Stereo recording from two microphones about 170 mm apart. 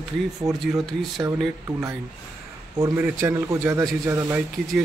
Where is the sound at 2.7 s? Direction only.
15° right (ahead or behind).